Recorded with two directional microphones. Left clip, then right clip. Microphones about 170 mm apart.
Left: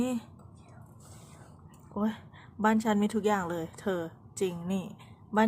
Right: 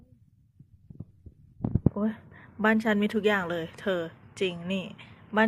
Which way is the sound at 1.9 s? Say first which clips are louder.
Left 3 dB; 5° left (ahead or behind).